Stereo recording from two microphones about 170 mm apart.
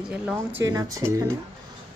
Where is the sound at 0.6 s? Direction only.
20° right (ahead or behind).